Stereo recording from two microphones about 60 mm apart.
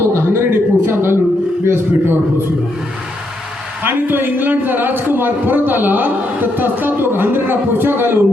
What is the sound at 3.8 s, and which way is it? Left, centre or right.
A man's voice, right.